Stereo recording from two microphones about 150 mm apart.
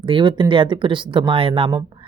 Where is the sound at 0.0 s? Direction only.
35° right (ahead or behind).